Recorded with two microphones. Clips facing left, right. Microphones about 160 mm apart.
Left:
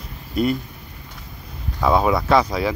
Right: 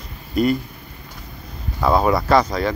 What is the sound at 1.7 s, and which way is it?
Speech, centre (ahead or behind).